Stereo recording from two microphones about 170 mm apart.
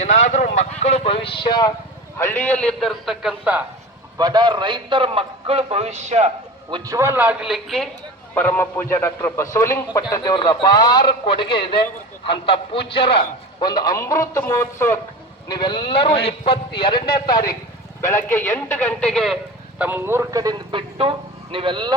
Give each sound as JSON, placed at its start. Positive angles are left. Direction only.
{"t": 0.0, "sound": "speech", "side_deg": 45}
{"t": 2.1, "sound": "a man's voice", "side_deg": 15}
{"t": 4.2, "sound": "a man's voice", "side_deg": -25}
{"t": 6.7, "sound": "a man's voice", "side_deg": -25}
{"t": 8.4, "sound": "a man's voice", "side_deg": 10}
{"t": 18.3, "sound": "speech", "side_deg": 15}
{"t": 19.8, "sound": "speech", "side_deg": -10}